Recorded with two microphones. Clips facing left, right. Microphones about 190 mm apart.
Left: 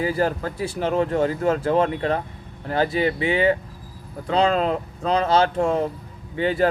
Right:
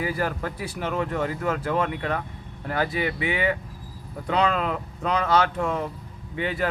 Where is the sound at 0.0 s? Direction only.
30° left (ahead or behind).